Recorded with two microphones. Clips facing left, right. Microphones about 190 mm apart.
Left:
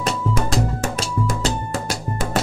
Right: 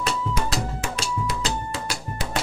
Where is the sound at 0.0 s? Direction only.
45° left (ahead or behind).